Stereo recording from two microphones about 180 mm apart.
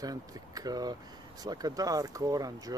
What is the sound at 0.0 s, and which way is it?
Speech, 20° right (ahead or behind).